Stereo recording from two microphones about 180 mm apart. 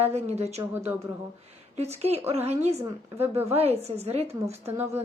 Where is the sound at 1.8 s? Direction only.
35° right (ahead or behind).